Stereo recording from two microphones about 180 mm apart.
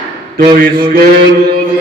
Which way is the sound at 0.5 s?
55° right (ahead or behind).